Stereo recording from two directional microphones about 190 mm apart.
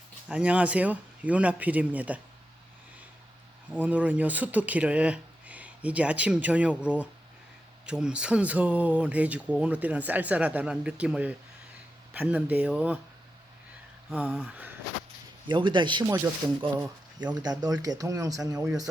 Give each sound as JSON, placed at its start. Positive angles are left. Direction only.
{"t": 0.3, "sound": "speech", "side_deg": -5}
{"t": 3.7, "sound": "speech", "side_deg": -10}
{"t": 14.1, "sound": "a sound", "side_deg": -5}
{"t": 15.4, "sound": "speech", "side_deg": -25}